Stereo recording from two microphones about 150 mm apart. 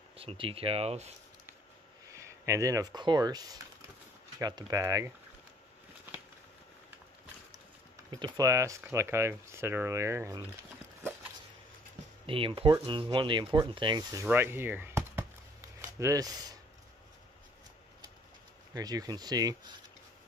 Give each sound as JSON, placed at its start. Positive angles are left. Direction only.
{"t": 0.2, "sound": "speech", "side_deg": -40}
{"t": 2.1, "sound": "speech", "side_deg": -20}
{"t": 8.1, "sound": "speech", "side_deg": -25}
{"t": 12.3, "sound": "speech", "side_deg": -35}
{"t": 14.2, "sound": "chop", "side_deg": -15}
{"t": 18.7, "sound": "speech", "side_deg": -25}